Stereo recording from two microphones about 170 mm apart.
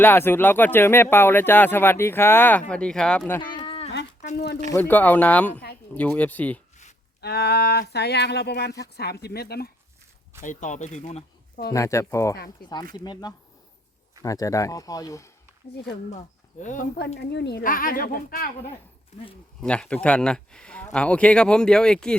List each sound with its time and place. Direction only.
0.0 s speech: 15° left (ahead or behind)
3.5 s livestock: 30° left (ahead or behind)
4.7 s speech: 10° left (ahead or behind)
7.2 s a sound: 70° left (ahead or behind)
10.4 s speech: 45° left (ahead or behind)
11.7 s speech: 20° left (ahead or behind)
16.0 s speech: 45° left (ahead or behind)
17.2 s speech: 80° left
17.6 s a woman's voice: 55° left (ahead or behind)
19.6 s speech: 5° left (ahead or behind)